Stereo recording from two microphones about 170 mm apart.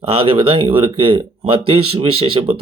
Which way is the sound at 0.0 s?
30° right (ahead or behind).